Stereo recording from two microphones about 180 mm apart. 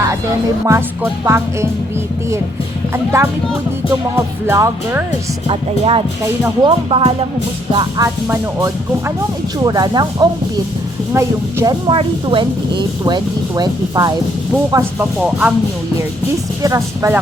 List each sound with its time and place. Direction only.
1.0 s speech: 10° right (ahead or behind)
2.9 s speech: 15° right (ahead or behind)
4.4 s speech: 15° right (ahead or behind)
5.5 s speech: 30° right (ahead or behind); by 11.8 s 15° right (ahead or behind)
11.9 s speech: 30° right (ahead or behind); by 15.5 s 5° right (ahead or behind)
16.6 s speech: 15° right (ahead or behind)